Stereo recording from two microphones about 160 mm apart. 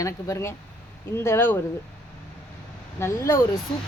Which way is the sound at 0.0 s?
20° left (ahead or behind).